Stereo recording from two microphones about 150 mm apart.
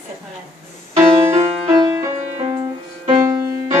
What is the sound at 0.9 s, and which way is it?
Music, 20° right (ahead or behind).